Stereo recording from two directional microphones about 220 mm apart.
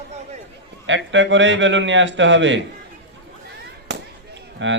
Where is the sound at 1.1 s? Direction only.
55° right (ahead or behind).